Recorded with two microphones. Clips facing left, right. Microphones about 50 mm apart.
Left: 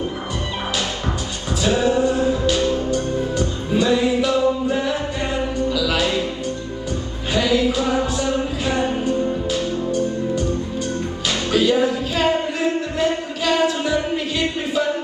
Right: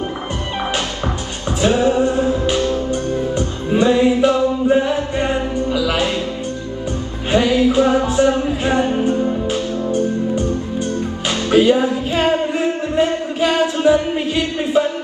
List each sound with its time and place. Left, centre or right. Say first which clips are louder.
1.6 s music: right 3 dB; right
7.3 s music: right 4 dB; right